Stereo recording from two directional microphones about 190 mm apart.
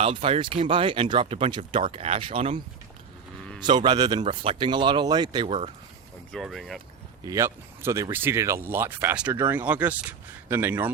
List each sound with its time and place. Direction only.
0.0 s speech: 30° right (ahead or behind)
3.6 s speech: 25° right (ahead or behind)
6.3 s speech: centre (ahead or behind)
7.3 s speech: 15° right (ahead or behind)